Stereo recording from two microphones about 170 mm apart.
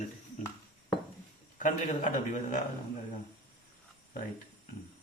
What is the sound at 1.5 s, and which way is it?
A man's voice, 50° left (ahead or behind).